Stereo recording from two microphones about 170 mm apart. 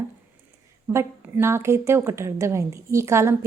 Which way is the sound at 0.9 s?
15° right (ahead or behind).